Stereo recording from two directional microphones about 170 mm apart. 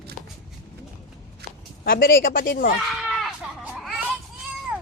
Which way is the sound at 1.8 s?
60° left (ahead or behind).